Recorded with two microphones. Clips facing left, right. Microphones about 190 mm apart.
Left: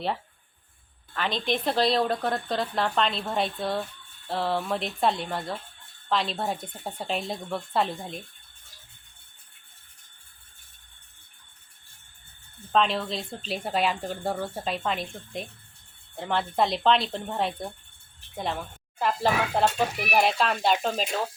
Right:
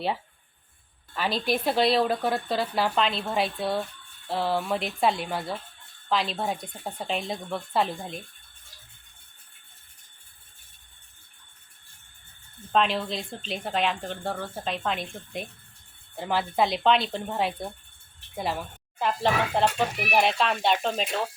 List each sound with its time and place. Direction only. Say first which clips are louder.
1.1 s speech: right 1 dB; 5° right (ahead or behind)
12.7 s speech: even; centre (ahead or behind)